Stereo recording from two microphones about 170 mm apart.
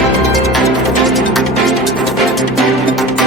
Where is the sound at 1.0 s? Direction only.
Centre (ahead or behind).